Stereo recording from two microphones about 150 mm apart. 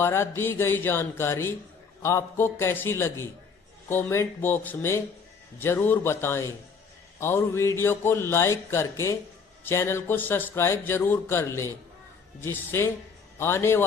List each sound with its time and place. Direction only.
0.0 s a man's voice: 15° left (ahead or behind)